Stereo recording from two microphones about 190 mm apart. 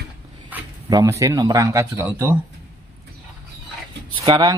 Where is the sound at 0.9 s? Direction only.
20° right (ahead or behind).